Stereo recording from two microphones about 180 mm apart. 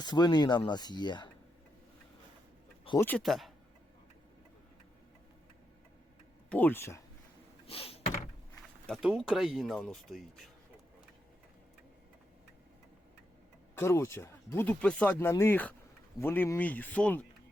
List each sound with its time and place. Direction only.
0.0 s speech: 25° left (ahead or behind)
3.0 s speech: 5° left (ahead or behind)
6.5 s speech: 10° left (ahead or behind)
7.7 s door: 30° left (ahead or behind)
8.9 s speech: centre (ahead or behind)
13.7 s speech: 15° left (ahead or behind)